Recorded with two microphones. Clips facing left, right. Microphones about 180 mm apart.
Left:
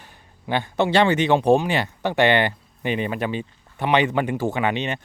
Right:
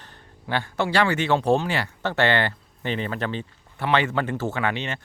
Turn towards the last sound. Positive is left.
turn(degrees=20)  # may be behind; listen again after turning